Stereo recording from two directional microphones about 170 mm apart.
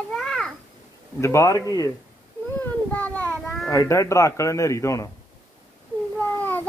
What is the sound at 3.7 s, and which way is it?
Speech, 15° left (ahead or behind).